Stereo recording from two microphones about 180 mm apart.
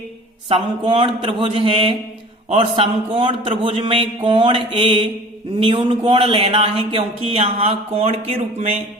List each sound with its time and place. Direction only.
0.4 s a man's voice: 30° right (ahead or behind)